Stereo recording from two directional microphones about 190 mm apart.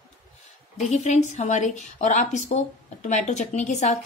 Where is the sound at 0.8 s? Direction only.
35° left (ahead or behind).